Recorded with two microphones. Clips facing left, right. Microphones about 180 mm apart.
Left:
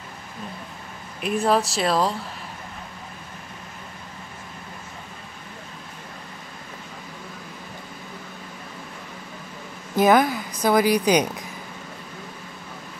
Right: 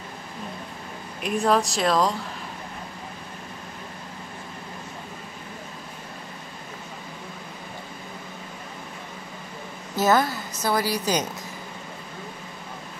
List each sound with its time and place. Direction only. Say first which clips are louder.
1.2 s speech: left 1 dB; centre (ahead or behind)
9.9 s a woman's voice: left 4 dB; 15° left (ahead or behind)